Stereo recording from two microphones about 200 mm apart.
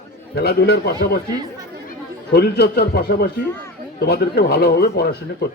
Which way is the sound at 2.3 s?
55° left (ahead or behind).